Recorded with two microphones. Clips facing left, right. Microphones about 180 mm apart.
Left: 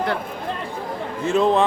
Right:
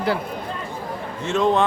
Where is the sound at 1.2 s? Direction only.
35° left (ahead or behind).